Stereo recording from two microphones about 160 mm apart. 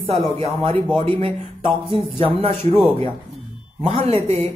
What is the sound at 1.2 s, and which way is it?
Speech, 35° right (ahead or behind).